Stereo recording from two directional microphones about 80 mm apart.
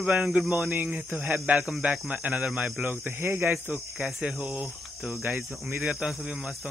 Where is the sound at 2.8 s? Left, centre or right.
Right.